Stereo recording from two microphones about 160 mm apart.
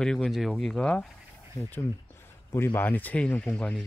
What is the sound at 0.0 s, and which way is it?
Speech, 5° left (ahead or behind).